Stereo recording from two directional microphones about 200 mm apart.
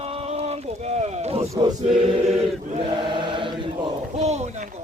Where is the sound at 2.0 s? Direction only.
30° right (ahead or behind).